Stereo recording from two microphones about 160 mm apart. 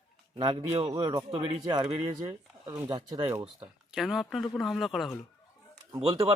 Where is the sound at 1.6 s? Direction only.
25° right (ahead or behind).